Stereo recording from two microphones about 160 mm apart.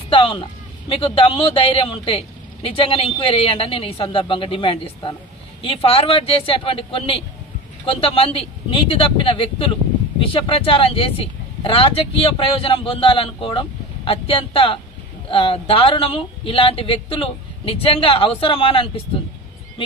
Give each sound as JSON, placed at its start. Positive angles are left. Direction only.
{"t": 0.1, "sound": "a man's voice", "side_deg": 30}